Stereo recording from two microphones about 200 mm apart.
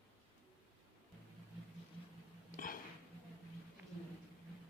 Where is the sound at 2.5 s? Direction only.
45° left (ahead or behind).